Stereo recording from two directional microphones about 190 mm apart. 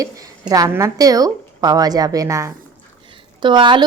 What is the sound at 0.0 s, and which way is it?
A woman's voice, 20° right (ahead or behind).